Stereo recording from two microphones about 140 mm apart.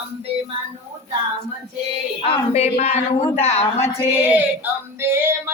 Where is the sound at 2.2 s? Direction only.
50° left (ahead or behind).